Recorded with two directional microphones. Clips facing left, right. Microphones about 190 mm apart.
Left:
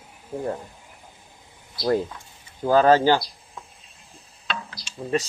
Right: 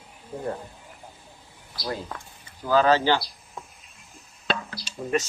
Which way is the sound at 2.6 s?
50° left (ahead or behind).